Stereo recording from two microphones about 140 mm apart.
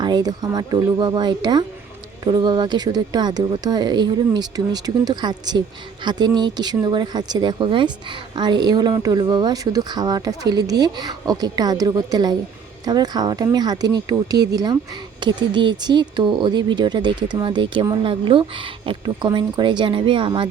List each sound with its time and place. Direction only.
0.0 s speech: 30° right (ahead or behind)